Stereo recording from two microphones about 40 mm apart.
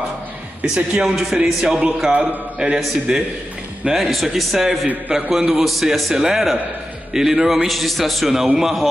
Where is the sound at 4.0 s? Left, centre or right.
Centre.